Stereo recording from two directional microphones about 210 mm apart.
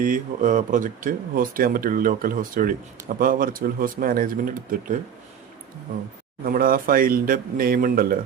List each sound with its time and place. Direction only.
0.0 s speech: 40° right (ahead or behind)
6.4 s speech: 45° right (ahead or behind)